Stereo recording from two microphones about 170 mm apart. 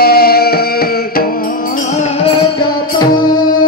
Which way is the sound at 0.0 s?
65° left (ahead or behind).